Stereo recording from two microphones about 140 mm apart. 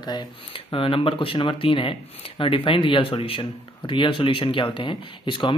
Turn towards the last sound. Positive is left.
turn(degrees=35)  # may be behind; listen again after turning